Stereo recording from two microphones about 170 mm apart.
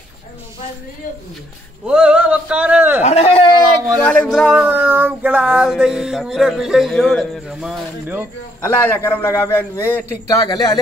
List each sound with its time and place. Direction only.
1.9 s a man's voice: 5° right (ahead or behind)
3.0 s a man's voice: 40° left (ahead or behind)
3.9 s speech: 5° left (ahead or behind)
8.5 s a man's voice: 15° left (ahead or behind)